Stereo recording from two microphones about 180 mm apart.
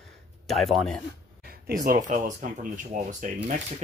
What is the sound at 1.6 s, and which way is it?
Speech, 55° right (ahead or behind).